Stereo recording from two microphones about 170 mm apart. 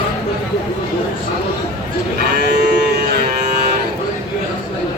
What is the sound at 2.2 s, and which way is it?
Livestock, 80° right.